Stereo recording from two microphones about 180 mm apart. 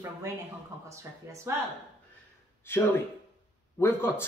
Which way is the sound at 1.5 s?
15° right (ahead or behind).